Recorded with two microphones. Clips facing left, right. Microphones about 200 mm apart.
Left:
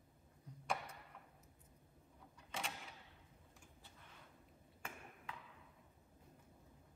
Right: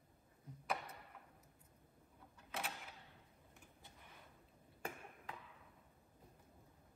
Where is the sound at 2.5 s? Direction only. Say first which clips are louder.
Right 1 dB; 5° right (ahead or behind).